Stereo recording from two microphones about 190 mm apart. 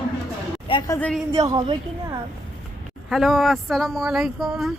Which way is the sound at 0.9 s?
5° left (ahead or behind).